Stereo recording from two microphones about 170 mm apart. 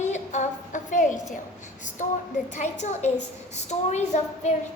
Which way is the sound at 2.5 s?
45° left (ahead or behind).